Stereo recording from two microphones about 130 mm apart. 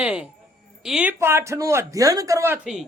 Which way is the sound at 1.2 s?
20° right (ahead or behind).